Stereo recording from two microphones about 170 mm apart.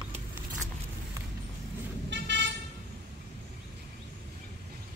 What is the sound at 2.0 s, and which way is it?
Vehicle, 90° right.